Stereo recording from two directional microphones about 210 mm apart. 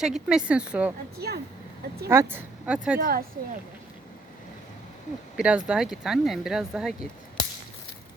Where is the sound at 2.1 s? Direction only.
10° right (ahead or behind).